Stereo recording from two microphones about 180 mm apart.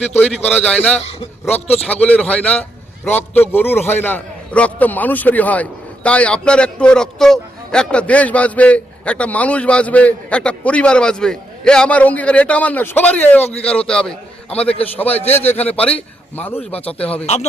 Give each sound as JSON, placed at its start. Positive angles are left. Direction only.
{"t": 0.2, "sound": "a man's voice", "side_deg": 10}
{"t": 1.5, "sound": "a man's voice", "side_deg": 35}
{"t": 1.8, "sound": "a man's voice", "side_deg": 5}
{"t": 16.6, "sound": "a man's voice", "side_deg": 35}
{"t": 17.0, "sound": "a man's voice", "side_deg": 5}